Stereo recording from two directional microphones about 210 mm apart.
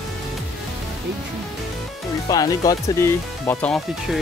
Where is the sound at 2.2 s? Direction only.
15° left (ahead or behind).